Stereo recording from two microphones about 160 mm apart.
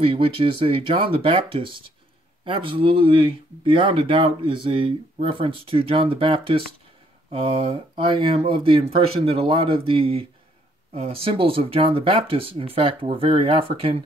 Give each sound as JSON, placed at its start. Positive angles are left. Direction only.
{"t": 0.0, "sound": "speech", "side_deg": -35}